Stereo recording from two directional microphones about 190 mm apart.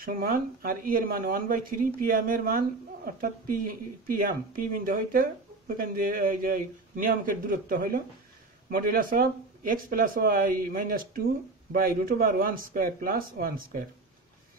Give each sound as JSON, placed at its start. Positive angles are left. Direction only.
{"t": 0.0, "sound": "speech", "side_deg": -50}